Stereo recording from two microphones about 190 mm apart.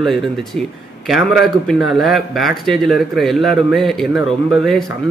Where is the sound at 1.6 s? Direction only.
Centre (ahead or behind).